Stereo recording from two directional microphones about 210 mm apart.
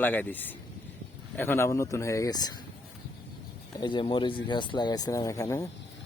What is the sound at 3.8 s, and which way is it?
Speech, 25° left (ahead or behind).